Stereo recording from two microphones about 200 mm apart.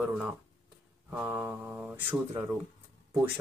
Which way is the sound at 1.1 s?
10° right (ahead or behind).